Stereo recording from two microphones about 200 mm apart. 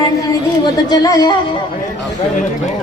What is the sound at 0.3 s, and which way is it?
A woman's voice, 20° left (ahead or behind).